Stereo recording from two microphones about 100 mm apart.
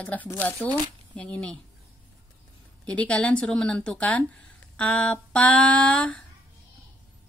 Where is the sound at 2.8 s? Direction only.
10° left (ahead or behind).